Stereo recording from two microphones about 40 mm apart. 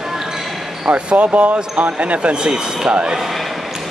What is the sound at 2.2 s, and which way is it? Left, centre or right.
Speech, right.